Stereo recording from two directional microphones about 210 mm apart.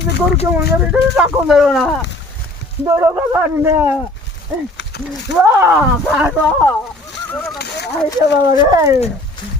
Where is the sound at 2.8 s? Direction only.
10° right (ahead or behind).